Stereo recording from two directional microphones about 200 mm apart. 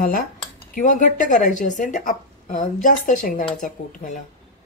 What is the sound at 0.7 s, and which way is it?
Speech, 40° left (ahead or behind).